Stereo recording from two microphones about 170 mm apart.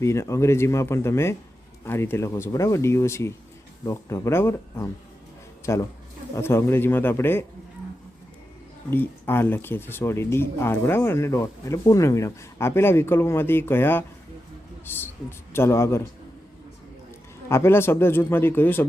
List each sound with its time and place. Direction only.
0.0 s speech: 15° left (ahead or behind)
8.9 s speech: 15° left (ahead or behind)
17.5 s speech: 15° left (ahead or behind)